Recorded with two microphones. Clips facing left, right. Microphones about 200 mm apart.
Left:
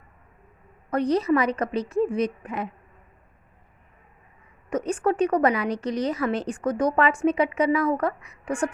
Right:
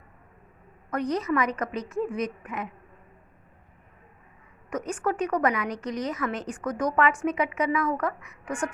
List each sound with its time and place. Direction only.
0.9 s a woman's voice: 30° left (ahead or behind)
4.7 s a woman's voice: 30° left (ahead or behind)